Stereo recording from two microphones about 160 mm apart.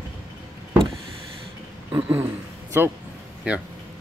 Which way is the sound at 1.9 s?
30° right (ahead or behind).